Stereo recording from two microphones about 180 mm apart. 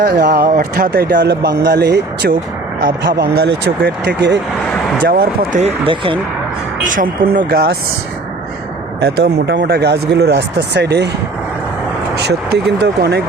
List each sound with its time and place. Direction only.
0.0 s speech: 60° right (ahead or behind)
5.5 s speech: 35° right (ahead or behind)
6.8 s speech: 50° right (ahead or behind); by 7.8 s 65° right (ahead or behind)
9.0 s speech: 65° right (ahead or behind)
12.1 s speech: 65° right (ahead or behind)